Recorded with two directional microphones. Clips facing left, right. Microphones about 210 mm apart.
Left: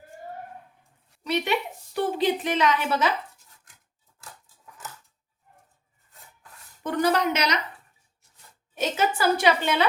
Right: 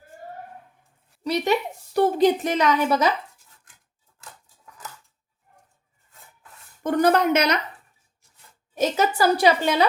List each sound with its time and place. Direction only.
1.2 s a woman's voice: 40° right (ahead or behind)
6.8 s a woman's voice: 50° right (ahead or behind)
8.8 s a woman's voice: 40° right (ahead or behind)